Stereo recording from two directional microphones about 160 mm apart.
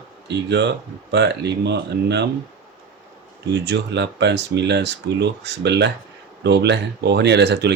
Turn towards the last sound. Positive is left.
turn(degrees=-90)